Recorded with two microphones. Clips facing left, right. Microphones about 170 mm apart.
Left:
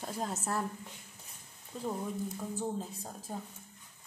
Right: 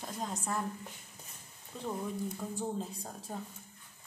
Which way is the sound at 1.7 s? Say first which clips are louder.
Left 1 dB; 5° left (ahead or behind).